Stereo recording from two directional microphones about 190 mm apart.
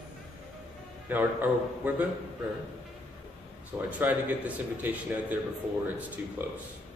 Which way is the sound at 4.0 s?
10° right (ahead or behind).